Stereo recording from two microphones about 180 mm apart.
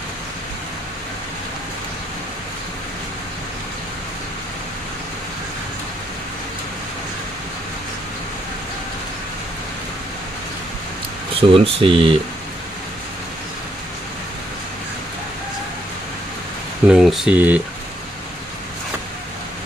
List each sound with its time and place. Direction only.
11.3 s speech: 30° right (ahead or behind)
16.9 s speech: 5° right (ahead or behind)